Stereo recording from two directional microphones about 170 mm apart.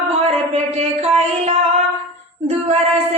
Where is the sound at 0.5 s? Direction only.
35° right (ahead or behind).